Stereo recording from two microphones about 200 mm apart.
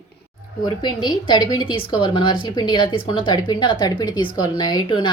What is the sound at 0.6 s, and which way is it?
A woman's voice, 20° left (ahead or behind).